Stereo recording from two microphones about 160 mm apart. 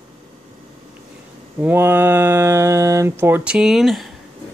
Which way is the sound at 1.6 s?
15° right (ahead or behind).